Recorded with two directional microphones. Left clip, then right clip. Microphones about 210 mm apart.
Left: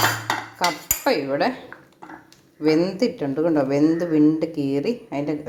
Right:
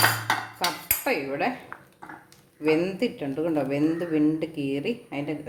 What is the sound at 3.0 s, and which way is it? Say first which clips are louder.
A woman's voice: left 6 dB; 20° left (ahead or behind).